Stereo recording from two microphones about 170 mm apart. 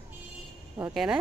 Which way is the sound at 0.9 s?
5° right (ahead or behind).